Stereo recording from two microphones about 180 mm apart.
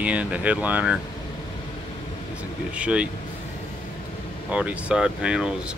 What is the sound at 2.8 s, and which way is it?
Speech, 5° right (ahead or behind).